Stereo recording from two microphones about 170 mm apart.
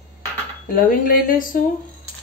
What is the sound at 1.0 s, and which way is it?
Speech, 55° left (ahead or behind).